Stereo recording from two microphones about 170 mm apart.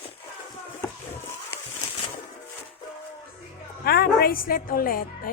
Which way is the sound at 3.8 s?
65° left (ahead or behind).